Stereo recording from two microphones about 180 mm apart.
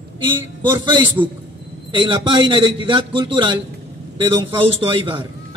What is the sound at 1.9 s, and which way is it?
A man's voice, 25° right (ahead or behind).